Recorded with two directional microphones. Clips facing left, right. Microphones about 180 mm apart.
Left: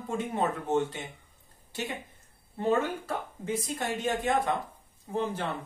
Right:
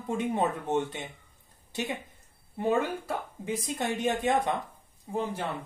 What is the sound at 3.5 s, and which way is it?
Speech, 20° right (ahead or behind).